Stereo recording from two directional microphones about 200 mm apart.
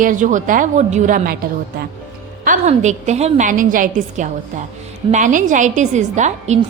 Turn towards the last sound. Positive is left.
turn(degrees=-35)  # may be behind; listen again after turning